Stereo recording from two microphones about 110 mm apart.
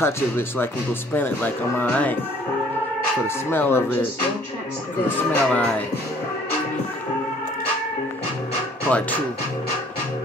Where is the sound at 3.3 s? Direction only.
20° left (ahead or behind).